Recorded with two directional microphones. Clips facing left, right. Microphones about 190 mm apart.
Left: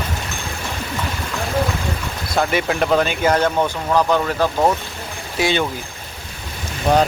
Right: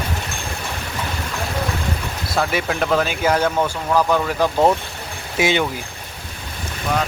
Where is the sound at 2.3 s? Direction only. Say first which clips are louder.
Left 2 dB; centre (ahead or behind); by 5.6 s 15° right (ahead or behind).